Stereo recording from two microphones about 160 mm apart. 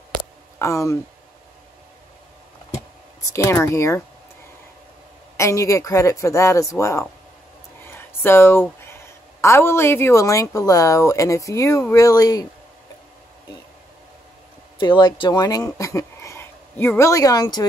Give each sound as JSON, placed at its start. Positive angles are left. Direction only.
{"t": 0.6, "sound": "speech", "side_deg": 20}
{"t": 3.3, "sound": "speech", "side_deg": 20}
{"t": 5.4, "sound": "speech", "side_deg": 20}
{"t": 14.8, "sound": "speech", "side_deg": 30}